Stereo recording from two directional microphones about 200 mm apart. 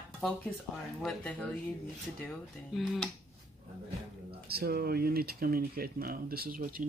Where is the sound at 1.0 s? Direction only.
5° left (ahead or behind).